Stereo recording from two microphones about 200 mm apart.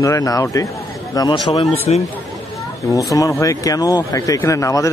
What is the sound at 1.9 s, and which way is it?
Speech, 35° left (ahead or behind).